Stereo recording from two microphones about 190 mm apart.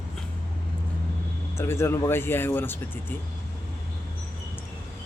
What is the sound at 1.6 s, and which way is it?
A man's voice, 15° left (ahead or behind).